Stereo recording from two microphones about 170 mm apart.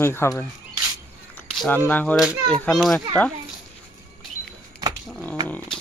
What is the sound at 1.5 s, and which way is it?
A child's voice, 5° left (ahead or behind).